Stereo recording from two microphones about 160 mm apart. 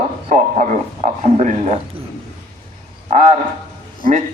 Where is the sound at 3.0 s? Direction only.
50° right (ahead or behind).